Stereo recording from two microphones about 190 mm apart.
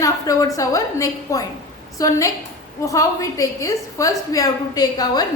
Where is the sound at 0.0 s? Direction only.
15° left (ahead or behind).